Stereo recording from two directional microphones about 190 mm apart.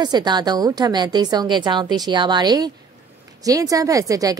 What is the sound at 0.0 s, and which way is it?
A woman's voice, 20° right (ahead or behind).